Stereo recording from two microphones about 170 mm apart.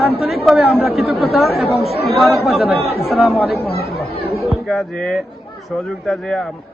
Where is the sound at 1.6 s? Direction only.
35° left (ahead or behind).